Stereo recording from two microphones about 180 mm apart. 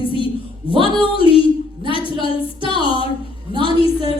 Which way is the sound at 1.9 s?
30° left (ahead or behind).